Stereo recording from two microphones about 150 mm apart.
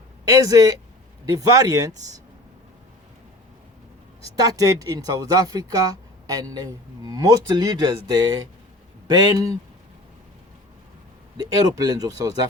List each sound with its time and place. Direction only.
0.3 s speech: 25° right (ahead or behind)
4.4 s speech: 25° right (ahead or behind)
11.9 s speech: 25° right (ahead or behind)